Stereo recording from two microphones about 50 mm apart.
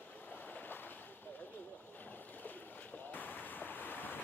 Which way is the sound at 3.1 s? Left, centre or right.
Left.